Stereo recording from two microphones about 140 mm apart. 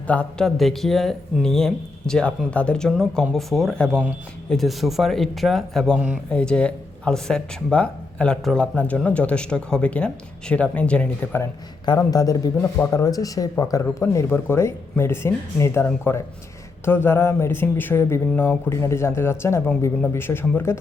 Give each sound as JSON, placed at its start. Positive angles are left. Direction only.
{"t": 0.1, "sound": "speech", "side_deg": 5}
{"t": 11.9, "sound": "speech", "side_deg": 25}